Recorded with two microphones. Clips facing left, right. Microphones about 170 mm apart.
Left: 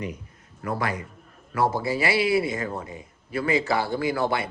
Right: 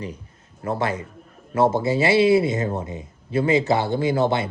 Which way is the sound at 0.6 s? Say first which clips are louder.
Right 4 dB; 25° right (ahead or behind).